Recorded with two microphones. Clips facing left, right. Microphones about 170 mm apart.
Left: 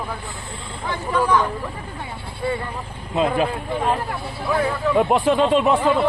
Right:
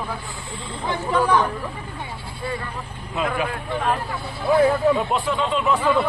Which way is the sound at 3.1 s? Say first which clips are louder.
Left 5 dB; 30° left (ahead or behind).